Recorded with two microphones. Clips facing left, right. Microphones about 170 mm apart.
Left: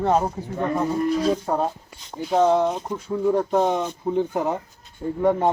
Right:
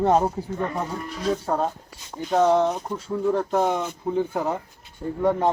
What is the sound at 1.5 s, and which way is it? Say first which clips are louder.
Speech: left 1 dB; 10° left (ahead or behind).